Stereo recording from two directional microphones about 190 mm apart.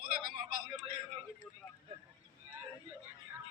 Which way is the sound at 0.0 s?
50° right (ahead or behind).